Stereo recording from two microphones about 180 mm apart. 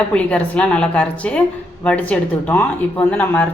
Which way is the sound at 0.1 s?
5° left (ahead or behind).